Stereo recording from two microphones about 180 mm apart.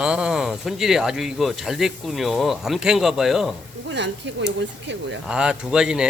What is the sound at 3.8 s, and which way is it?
Speech, 85° right.